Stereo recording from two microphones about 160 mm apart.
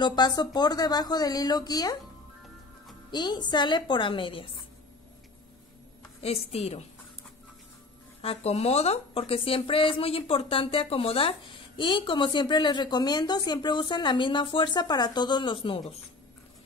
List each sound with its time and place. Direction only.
0.0 s a woman's voice: 25° left (ahead or behind)
3.1 s a woman's voice: 25° left (ahead or behind)
6.2 s a woman's voice: 40° left (ahead or behind)
8.2 s a woman's voice: 40° left (ahead or behind)